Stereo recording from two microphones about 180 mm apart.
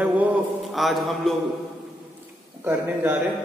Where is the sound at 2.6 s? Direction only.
10° right (ahead or behind).